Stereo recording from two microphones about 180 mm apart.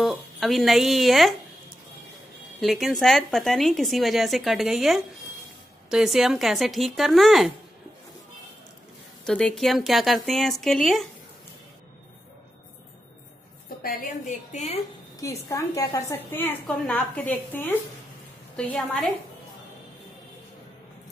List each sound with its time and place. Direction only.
0.0 s speech: centre (ahead or behind)
2.6 s a woman's voice: centre (ahead or behind)
9.2 s a woman's voice: 5° left (ahead or behind)
13.8 s a woman's voice: 50° left (ahead or behind)
15.1 s a woman's voice: 15° left (ahead or behind)